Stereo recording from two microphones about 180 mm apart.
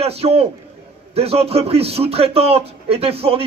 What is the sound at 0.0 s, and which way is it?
Speech, 35° right (ahead or behind).